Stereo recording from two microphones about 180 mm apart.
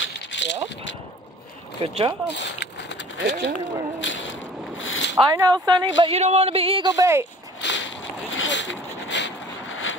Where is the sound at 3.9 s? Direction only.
90° left.